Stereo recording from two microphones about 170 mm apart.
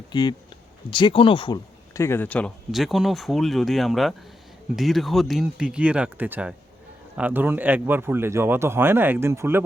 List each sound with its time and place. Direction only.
0.1 s speech: 25° left (ahead or behind)
1.9 s a man's voice: 15° left (ahead or behind); by 9.6 s 15° right (ahead or behind)